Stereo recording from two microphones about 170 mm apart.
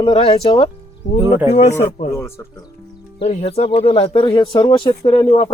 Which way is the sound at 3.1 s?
35° left (ahead or behind).